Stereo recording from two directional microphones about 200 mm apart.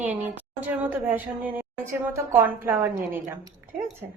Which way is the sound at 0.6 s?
10° right (ahead or behind).